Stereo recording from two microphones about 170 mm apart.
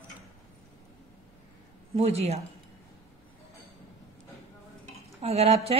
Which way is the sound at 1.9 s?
35° right (ahead or behind).